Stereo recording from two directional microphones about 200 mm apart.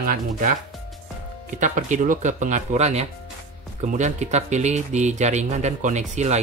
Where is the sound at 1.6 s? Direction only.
40° right (ahead or behind).